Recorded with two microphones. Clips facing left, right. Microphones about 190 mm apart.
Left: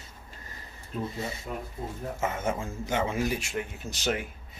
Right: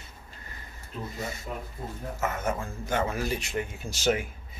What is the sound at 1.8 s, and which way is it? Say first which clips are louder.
A man's voice: even; 20° left (ahead or behind).